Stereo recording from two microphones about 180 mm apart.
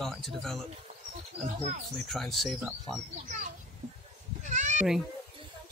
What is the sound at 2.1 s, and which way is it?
Speech, centre (ahead or behind).